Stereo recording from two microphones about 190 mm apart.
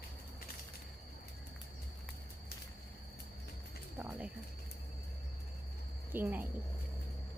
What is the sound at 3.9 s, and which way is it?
Speech, 10° right (ahead or behind).